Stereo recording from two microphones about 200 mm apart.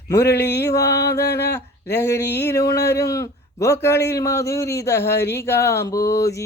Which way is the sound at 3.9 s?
55° left (ahead or behind).